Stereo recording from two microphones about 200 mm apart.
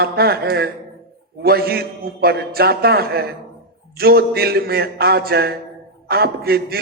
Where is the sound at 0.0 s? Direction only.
50° right (ahead or behind).